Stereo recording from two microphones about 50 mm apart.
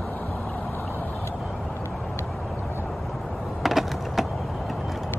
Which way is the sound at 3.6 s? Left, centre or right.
Centre.